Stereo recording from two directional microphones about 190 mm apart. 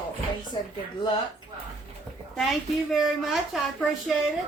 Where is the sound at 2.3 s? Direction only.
Centre (ahead or behind).